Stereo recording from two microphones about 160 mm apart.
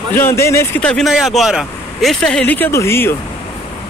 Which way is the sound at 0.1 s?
15° left (ahead or behind).